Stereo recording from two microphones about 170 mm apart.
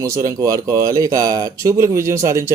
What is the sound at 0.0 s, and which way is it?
A man's voice, 20° right (ahead or behind).